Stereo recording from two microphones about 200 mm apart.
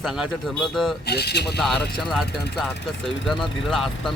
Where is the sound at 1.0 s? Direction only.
55° left (ahead or behind).